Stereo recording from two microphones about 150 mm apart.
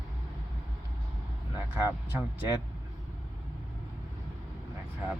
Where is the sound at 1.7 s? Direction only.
15° right (ahead or behind).